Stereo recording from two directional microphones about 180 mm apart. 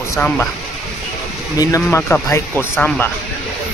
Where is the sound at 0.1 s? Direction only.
10° left (ahead or behind).